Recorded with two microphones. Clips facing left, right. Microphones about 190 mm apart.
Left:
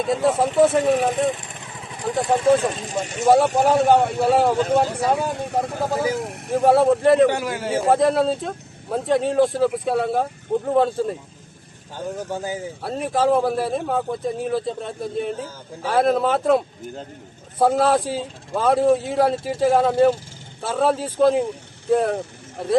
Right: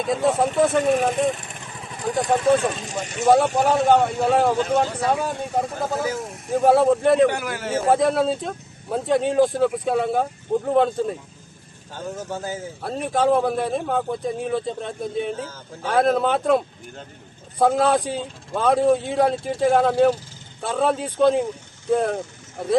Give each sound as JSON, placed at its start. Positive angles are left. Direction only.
{"t": 0.0, "sound": "speech", "side_deg": 0}
{"t": 2.0, "sound": "speech", "side_deg": 0}
{"t": 2.6, "sound": "speech", "side_deg": 30}
{"t": 3.2, "sound": "a man's voice", "side_deg": 0}
{"t": 6.5, "sound": "speech", "side_deg": 0}
{"t": 7.3, "sound": "a man's voice", "side_deg": 25}
{"t": 7.8, "sound": "speech", "side_deg": 0}
{"t": 11.9, "sound": "a man's voice", "side_deg": 15}
{"t": 12.9, "sound": "speech", "side_deg": 0}